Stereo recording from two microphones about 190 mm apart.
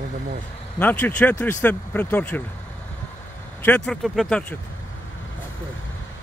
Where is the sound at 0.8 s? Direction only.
10° left (ahead or behind).